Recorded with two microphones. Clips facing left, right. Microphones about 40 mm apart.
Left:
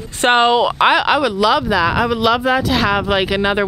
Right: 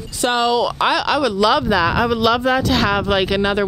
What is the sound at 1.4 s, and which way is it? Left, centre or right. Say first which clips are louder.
Speech: left 1 dB; centre.